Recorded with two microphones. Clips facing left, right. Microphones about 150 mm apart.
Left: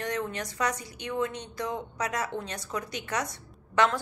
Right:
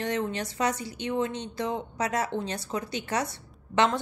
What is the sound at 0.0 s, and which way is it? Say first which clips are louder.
A woman's voice: right 3 dB; 25° right (ahead or behind).